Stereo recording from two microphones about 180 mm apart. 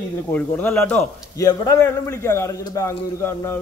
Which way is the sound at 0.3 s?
10° left (ahead or behind).